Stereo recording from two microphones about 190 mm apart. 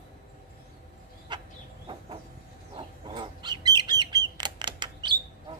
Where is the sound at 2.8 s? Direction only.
25° right (ahead or behind).